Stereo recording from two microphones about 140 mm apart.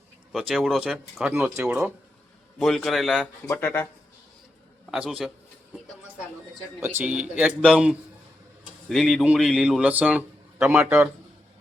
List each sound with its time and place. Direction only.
0.3 s speech: centre (ahead or behind)
1.3 s speech: 15° right (ahead or behind)
1.6 s speech: 5° right (ahead or behind)
3.4 s speech: 20° left (ahead or behind)
4.9 s speech: 5° right (ahead or behind)
6.7 s a man's voice: 15° right (ahead or behind)